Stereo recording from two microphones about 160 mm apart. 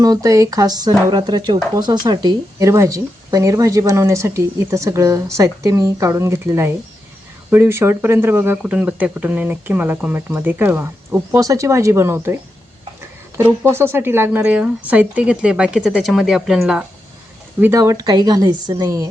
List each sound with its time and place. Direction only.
0.0 s speech: 20° right (ahead or behind); by 16.8 s 5° right (ahead or behind)
17.6 s speech: 20° right (ahead or behind)